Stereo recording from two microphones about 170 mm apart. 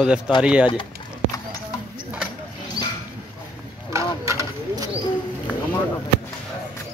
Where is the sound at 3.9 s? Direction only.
15° right (ahead or behind).